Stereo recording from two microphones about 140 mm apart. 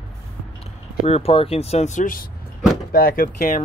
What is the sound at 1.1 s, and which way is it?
Speech, 45° left (ahead or behind).